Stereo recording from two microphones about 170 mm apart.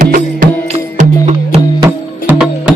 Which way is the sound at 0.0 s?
50° right (ahead or behind).